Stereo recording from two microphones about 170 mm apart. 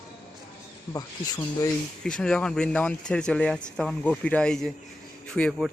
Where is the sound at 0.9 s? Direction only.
25° left (ahead or behind).